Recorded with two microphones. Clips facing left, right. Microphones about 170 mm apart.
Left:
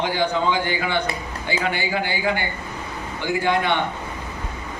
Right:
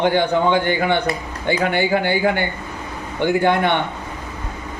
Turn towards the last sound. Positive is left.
turn(degrees=-55)  # may be behind; listen again after turning